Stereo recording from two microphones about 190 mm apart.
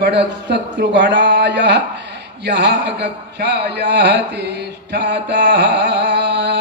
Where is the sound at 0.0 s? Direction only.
65° right (ahead or behind).